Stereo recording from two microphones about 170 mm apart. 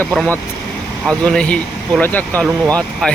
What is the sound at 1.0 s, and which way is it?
Speech, 5° left (ahead or behind).